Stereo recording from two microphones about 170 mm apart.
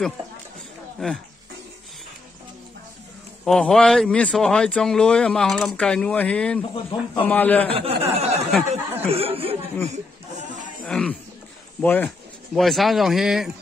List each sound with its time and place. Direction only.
0.9 s speech: 5° left (ahead or behind)
3.4 s speech: 5° left (ahead or behind)
6.7 s speech: 30° left (ahead or behind)
7.2 s a man's voice: 10° left (ahead or behind)
7.7 s speech: 35° right (ahead or behind)
8.6 s a sound: 35° right (ahead or behind)
10.8 s a man's voice: 5° left (ahead or behind)